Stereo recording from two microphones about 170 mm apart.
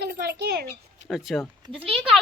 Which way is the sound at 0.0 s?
70° right (ahead or behind).